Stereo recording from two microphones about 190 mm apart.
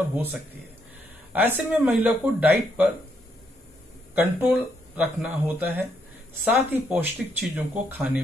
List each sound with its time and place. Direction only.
0.1 s speech: 10° right (ahead or behind)
4.1 s speech: 10° right (ahead or behind)